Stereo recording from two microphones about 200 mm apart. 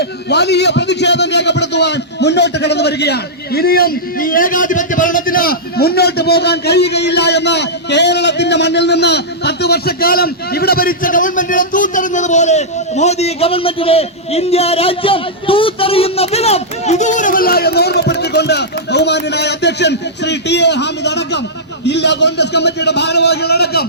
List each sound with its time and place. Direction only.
0.0 s a man's voice: 55° left (ahead or behind)